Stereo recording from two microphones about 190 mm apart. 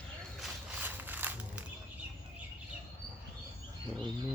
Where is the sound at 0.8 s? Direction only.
10° right (ahead or behind).